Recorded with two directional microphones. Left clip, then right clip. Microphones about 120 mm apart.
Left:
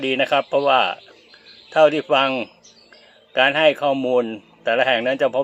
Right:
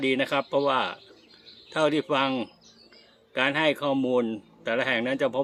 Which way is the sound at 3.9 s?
35° right (ahead or behind).